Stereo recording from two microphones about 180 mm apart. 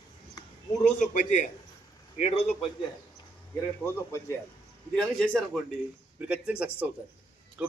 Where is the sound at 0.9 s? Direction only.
45° left (ahead or behind).